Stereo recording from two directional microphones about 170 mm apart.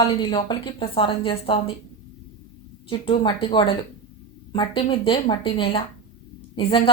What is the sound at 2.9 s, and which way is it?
A woman's voice, 30° left (ahead or behind).